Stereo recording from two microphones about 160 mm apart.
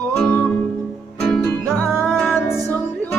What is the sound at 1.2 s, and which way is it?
Music, 5° left (ahead or behind).